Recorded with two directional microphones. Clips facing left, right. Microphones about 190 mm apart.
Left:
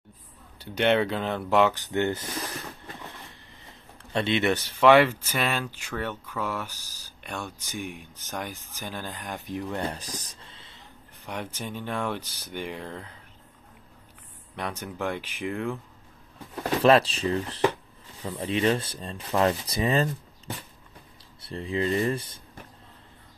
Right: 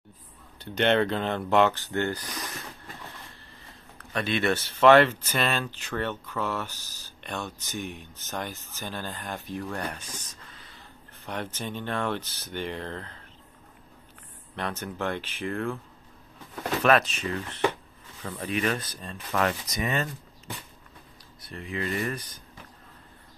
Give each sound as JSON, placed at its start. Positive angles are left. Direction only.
{"t": 0.6, "sound": "speech", "side_deg": 10}
{"t": 4.0, "sound": "speech", "side_deg": 25}
{"t": 11.2, "sound": "speech", "side_deg": 10}
{"t": 14.5, "sound": "speech", "side_deg": 10}
{"t": 16.8, "sound": "speech", "side_deg": 30}
{"t": 18.2, "sound": "speech", "side_deg": 20}
{"t": 21.4, "sound": "speech", "side_deg": 30}